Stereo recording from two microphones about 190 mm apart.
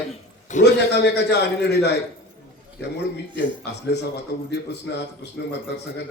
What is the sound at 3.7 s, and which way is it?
Speech, 65° left (ahead or behind).